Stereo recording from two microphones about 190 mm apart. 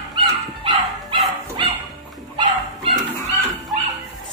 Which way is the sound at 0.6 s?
25° right (ahead or behind).